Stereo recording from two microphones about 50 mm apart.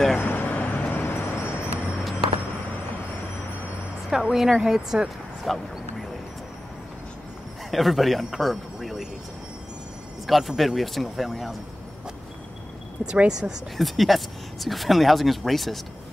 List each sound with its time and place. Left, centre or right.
0.2 s vehicle: left
1.2 s vehicle: left
4.1 s speech: centre
5.4 s a sound: centre
7.7 s speech: centre
8.7 s a sound: centre
10.2 s speech: centre
13.0 s speech: right
13.3 s speech: centre
13.7 s speech: centre